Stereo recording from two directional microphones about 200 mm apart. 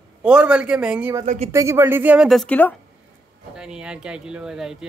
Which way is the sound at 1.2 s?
35° right (ahead or behind).